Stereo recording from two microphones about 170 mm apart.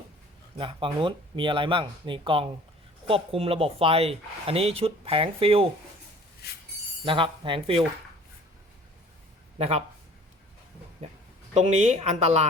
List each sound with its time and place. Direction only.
0.6 s speech: 30° right (ahead or behind)
7.0 s speech: 30° right (ahead or behind)
9.6 s speech: 35° right (ahead or behind)
11.5 s speech: 40° right (ahead or behind)